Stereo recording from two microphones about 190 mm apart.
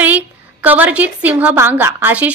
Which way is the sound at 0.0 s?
10° right (ahead or behind).